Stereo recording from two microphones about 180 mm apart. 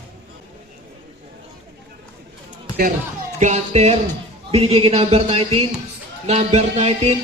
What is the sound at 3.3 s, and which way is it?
Speech, 40° right (ahead or behind).